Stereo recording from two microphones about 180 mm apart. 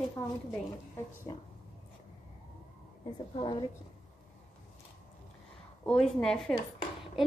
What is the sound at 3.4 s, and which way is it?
Speech, 30° left (ahead or behind).